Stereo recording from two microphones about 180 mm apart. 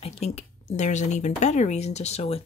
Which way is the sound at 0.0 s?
35° left (ahead or behind).